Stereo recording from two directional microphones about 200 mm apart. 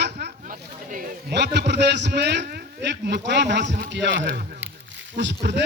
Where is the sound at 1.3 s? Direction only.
60° right (ahead or behind).